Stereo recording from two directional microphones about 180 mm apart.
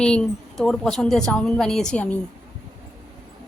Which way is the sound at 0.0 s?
5° left (ahead or behind).